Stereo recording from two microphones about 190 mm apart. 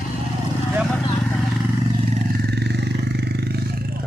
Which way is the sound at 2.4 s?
60° right (ahead or behind).